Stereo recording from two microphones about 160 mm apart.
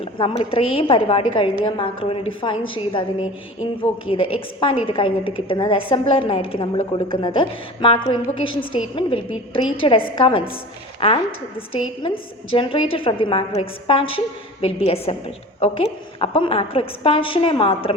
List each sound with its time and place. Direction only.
0.0 s a woman's voice: 35° left (ahead or behind)